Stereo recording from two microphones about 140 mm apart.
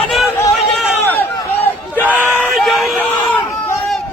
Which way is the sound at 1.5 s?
15° left (ahead or behind).